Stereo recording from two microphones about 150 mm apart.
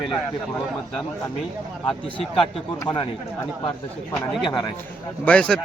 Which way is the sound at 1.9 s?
35° left (ahead or behind).